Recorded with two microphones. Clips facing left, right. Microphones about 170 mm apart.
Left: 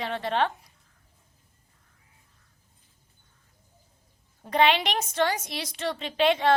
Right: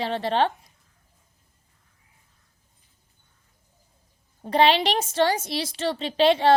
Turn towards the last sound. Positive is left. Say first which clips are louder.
# right 4 dB
turn(degrees=-30)  # may be behind; listen again after turning